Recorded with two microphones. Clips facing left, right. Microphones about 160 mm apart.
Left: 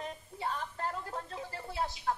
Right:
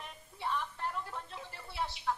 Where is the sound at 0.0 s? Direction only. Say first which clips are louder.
Left 3 dB; 40° left (ahead or behind).